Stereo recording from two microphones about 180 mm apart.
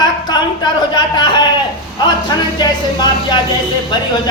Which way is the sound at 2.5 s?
25° left (ahead or behind).